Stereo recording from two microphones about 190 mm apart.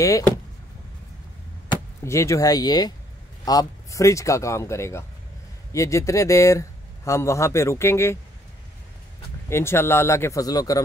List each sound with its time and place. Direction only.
1.7 s speech: 15° left (ahead or behind)
9.5 s speech: 15° left (ahead or behind)